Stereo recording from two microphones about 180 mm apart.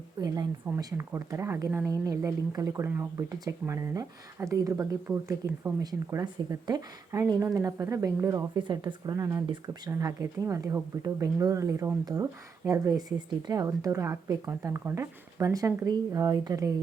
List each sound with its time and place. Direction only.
0.7 s speech: 15° right (ahead or behind)